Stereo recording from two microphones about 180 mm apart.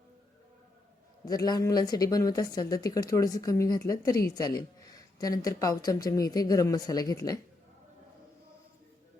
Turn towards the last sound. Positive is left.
turn(degrees=20)  # may be behind; listen again after turning